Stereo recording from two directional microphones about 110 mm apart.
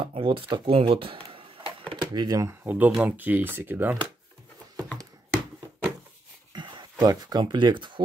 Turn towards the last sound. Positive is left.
turn(degrees=-45)  # may be behind; listen again after turning